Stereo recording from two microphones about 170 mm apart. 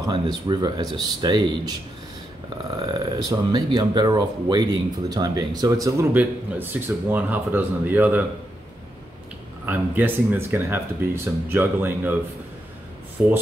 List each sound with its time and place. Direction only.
0.0 s speech: 25° right (ahead or behind)
2.9 s speech: 25° right (ahead or behind)
9.7 s speech: 10° right (ahead or behind)
13.2 s speech: 10° right (ahead or behind)